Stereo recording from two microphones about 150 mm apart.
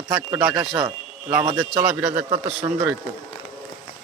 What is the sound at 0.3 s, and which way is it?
A man's voice, 5° right (ahead or behind).